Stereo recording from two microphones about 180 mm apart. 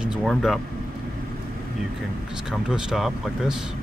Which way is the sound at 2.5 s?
5° right (ahead or behind).